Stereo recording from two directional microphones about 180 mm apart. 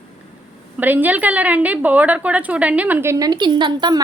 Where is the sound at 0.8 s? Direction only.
10° right (ahead or behind).